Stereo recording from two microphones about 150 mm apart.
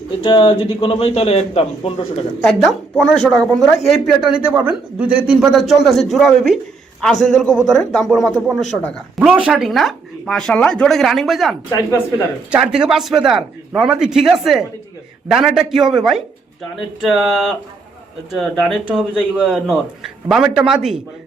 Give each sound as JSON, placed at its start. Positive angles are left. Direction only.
{"t": 0.2, "sound": "speech", "side_deg": 35}
{"t": 2.4, "sound": "a man's voice", "side_deg": 0}